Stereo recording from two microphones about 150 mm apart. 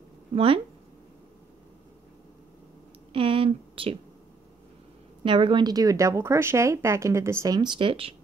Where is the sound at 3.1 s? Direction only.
35° right (ahead or behind).